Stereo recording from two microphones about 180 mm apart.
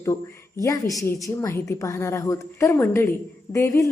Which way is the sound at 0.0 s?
15° left (ahead or behind).